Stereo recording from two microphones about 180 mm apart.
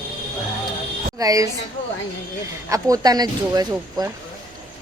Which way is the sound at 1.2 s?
20° right (ahead or behind).